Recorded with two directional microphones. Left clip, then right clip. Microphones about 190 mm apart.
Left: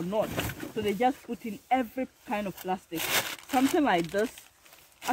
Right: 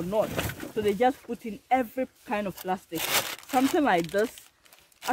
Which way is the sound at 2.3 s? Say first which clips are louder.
Right 2 dB; 15° right (ahead or behind).